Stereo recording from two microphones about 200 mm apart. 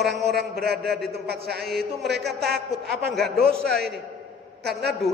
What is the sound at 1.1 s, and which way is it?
A man's voice, 50° right (ahead or behind).